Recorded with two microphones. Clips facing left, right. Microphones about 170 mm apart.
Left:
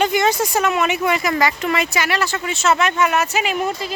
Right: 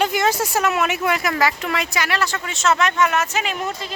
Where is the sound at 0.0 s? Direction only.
Centre (ahead or behind).